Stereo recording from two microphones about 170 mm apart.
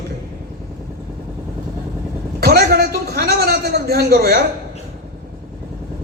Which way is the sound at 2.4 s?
65° right (ahead or behind).